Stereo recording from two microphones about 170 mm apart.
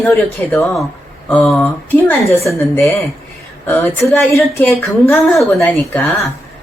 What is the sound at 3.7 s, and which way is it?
Speech, 10° left (ahead or behind).